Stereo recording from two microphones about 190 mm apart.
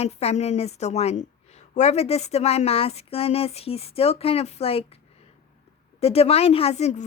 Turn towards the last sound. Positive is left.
turn(degrees=35)  # may be behind; listen again after turning